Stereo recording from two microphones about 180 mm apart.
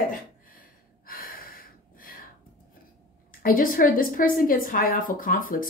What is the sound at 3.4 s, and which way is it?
A woman's voice, 50° left (ahead or behind).